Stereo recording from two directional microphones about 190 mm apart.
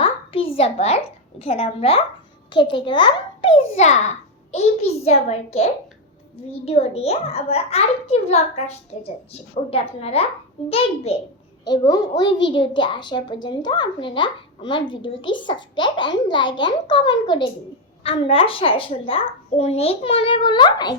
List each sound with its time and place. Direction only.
0.0 s a child's voice: 30° left (ahead or behind)
11.7 s a child's voice: 20° left (ahead or behind)